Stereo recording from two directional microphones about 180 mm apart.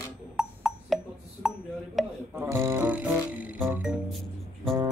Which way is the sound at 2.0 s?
Centre (ahead or behind).